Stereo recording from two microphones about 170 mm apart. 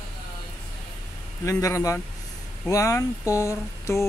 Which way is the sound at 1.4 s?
20° left (ahead or behind).